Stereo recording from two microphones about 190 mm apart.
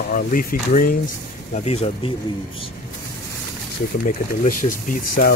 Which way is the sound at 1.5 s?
35° left (ahead or behind).